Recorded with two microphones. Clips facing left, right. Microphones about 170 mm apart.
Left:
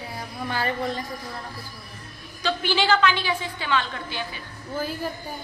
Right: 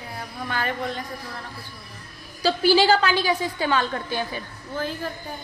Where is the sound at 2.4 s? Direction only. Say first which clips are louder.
Right 5 dB; 35° right (ahead or behind).